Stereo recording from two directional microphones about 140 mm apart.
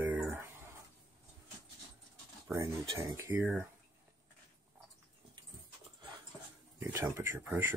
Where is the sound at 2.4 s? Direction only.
25° right (ahead or behind).